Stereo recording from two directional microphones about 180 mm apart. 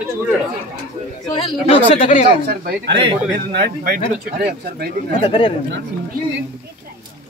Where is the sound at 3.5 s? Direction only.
50° right (ahead or behind).